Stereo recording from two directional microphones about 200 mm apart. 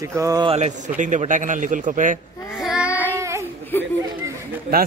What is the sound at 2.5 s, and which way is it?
Child singing, centre (ahead or behind).